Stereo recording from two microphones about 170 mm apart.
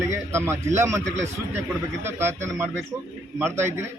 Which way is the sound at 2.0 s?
15° right (ahead or behind).